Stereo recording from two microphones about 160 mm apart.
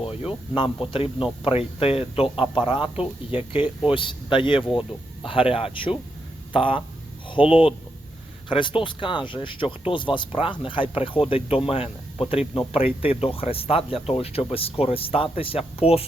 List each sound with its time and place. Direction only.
0.0 s speech: 35° left (ahead or behind)
8.4 s speech: 30° left (ahead or behind)